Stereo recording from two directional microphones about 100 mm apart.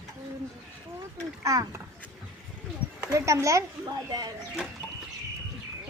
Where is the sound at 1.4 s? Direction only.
30° right (ahead or behind).